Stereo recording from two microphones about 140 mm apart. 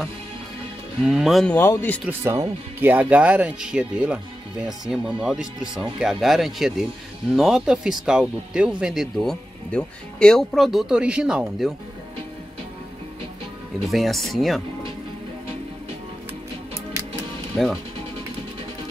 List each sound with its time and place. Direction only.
1.0 s speech: 5° right (ahead or behind)
1.5 s speech: 15° left (ahead or behind)
2.0 s speech: 20° right (ahead or behind)
13.8 s speech: centre (ahead or behind)
17.5 s speech: 5° left (ahead or behind)